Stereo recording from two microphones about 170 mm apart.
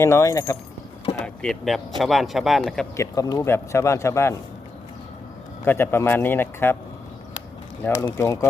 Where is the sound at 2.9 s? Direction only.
20° left (ahead or behind).